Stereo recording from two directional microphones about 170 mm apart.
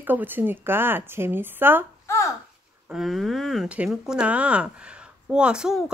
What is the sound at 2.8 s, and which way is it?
Speech, centre (ahead or behind).